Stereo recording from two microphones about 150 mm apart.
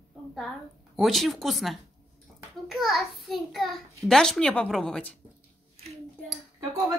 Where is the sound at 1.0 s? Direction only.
Centre (ahead or behind).